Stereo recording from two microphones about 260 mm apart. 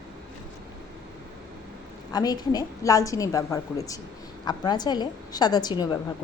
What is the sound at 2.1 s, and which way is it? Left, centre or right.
A woman's voice, centre.